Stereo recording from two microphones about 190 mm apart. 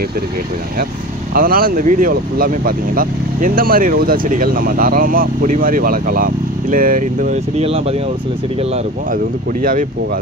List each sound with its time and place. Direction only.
1.3 s speech: 50° right (ahead or behind); by 7.9 s 30° right (ahead or behind)
9.1 s speech: 45° right (ahead or behind)